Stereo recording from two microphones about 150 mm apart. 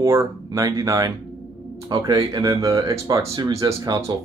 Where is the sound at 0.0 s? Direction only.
15° right (ahead or behind).